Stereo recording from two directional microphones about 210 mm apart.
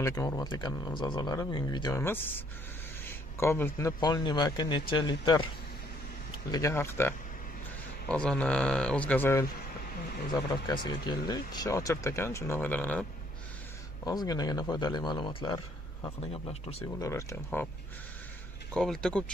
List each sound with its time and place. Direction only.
0.0 s speech: 15° left (ahead or behind)
6.5 s speech: 15° left (ahead or behind)
10.3 s speech: 20° left (ahead or behind)
14.0 s speech: 15° left (ahead or behind)
18.7 s speech: 5° left (ahead or behind)